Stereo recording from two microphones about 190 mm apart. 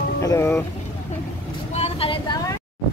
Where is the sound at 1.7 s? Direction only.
35° left (ahead or behind).